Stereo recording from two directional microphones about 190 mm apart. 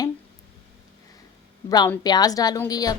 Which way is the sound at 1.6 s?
20° left (ahead or behind).